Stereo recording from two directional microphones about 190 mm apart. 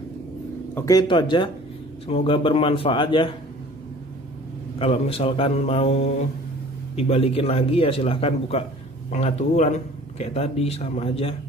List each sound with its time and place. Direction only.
0.7 s speech: 20° left (ahead or behind)
4.7 s a man's voice: 30° left (ahead or behind)